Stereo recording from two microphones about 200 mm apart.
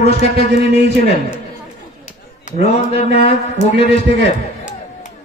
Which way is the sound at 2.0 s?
35° left (ahead or behind).